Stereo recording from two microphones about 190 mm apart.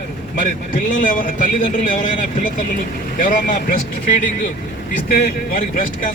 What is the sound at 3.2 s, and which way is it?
Speech, 45° left (ahead or behind).